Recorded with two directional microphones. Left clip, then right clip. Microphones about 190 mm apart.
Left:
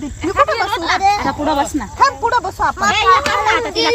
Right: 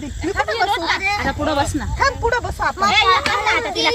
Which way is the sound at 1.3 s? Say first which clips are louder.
Left 3 dB; 35° left (ahead or behind).